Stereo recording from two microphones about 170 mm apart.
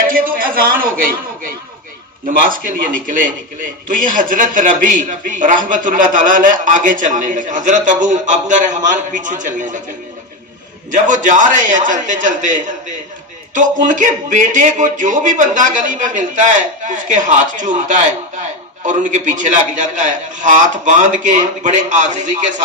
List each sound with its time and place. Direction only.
0.1 s a sound: 55° right (ahead or behind)
2.5 s a man's voice: 55° right (ahead or behind)
10.9 s a man's voice: 50° right (ahead or behind)